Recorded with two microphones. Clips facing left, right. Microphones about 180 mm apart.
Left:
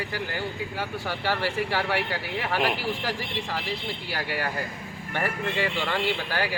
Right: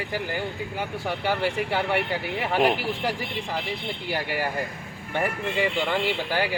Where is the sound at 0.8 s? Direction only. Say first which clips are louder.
Right 3 dB; 20° right (ahead or behind).